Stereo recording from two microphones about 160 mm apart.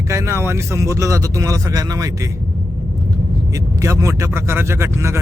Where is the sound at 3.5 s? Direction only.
20° right (ahead or behind).